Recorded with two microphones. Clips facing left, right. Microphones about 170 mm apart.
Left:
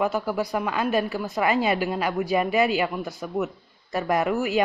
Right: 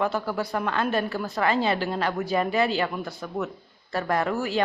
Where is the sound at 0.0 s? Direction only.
10° left (ahead or behind).